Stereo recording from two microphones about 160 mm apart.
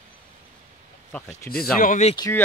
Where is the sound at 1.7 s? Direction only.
60° left (ahead or behind).